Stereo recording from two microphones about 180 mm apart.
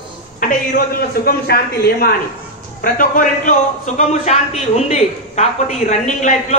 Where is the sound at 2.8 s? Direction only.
50° left (ahead or behind).